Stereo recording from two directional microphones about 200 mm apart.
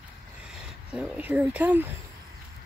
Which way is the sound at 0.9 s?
5° right (ahead or behind).